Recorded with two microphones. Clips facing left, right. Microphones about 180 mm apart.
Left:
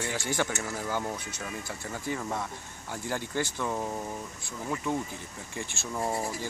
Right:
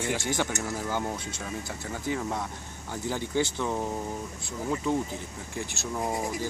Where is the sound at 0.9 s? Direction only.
25° right (ahead or behind).